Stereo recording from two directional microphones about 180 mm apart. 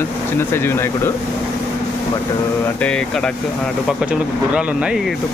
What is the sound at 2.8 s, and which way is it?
Speech, 5° left (ahead or behind).